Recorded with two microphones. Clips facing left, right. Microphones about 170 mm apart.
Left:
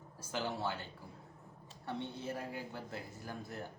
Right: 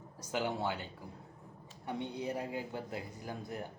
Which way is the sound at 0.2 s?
20° right (ahead or behind).